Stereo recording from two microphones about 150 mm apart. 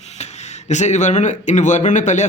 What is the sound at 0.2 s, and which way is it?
A man's voice, 45° left (ahead or behind).